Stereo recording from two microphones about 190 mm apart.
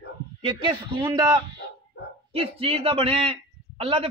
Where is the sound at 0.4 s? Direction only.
25° right (ahead or behind).